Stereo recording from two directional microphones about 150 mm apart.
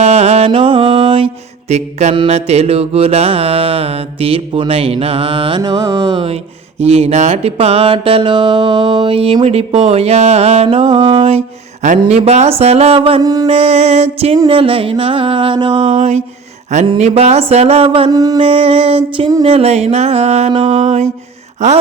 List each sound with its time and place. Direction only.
0.0 s mantra: 45° right (ahead or behind); by 6.1 s 30° right (ahead or behind)
6.1 s mantra: 45° right (ahead or behind)
11.9 s speech: 45° right (ahead or behind)
13.2 s a sound: 25° right (ahead or behind)
13.5 s speech: 40° right (ahead or behind)
14.3 s mantra: 35° right (ahead or behind)
15.8 s speech: 50° right (ahead or behind)
18.1 s a sound: 25° right (ahead or behind)
18.4 s mantra: 40° right (ahead or behind)
19.4 s speech: 40° right (ahead or behind)